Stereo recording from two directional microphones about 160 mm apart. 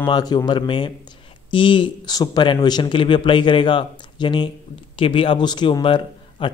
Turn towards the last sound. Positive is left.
turn(degrees=30)  # may be behind; listen again after turning